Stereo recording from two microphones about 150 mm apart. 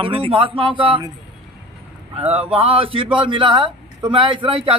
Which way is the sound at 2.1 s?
45° right (ahead or behind).